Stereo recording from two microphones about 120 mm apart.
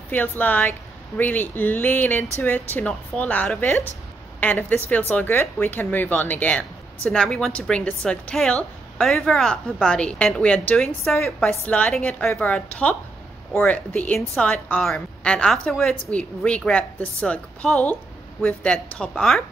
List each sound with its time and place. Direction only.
0.1 s a woman's voice: 15° left (ahead or behind)
12.3 s a woman's voice: 20° left (ahead or behind)